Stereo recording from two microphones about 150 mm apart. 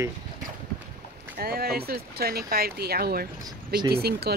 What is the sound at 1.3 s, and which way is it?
Speech, 90° right.